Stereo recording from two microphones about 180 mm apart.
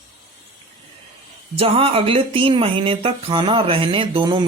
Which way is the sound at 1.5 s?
30° right (ahead or behind).